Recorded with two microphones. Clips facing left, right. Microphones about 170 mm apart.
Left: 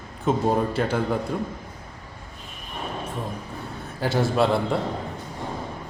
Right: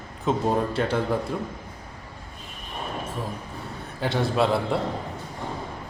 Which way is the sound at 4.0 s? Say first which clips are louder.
Left 2 dB; centre (ahead or behind).